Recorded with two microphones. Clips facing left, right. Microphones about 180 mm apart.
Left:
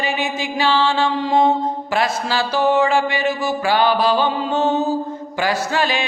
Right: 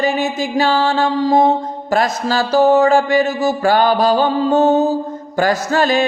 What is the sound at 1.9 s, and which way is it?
Speech, 40° right (ahead or behind).